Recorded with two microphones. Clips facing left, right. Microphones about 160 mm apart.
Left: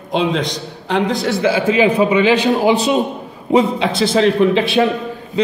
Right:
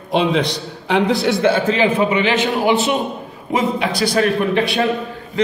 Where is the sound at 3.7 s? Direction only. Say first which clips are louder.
Left 2 dB; 20° left (ahead or behind).